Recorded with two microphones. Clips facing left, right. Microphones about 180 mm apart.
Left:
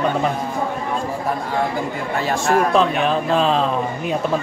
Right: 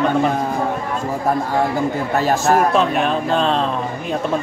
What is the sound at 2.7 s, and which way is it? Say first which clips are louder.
Speech: even; centre (ahead or behind).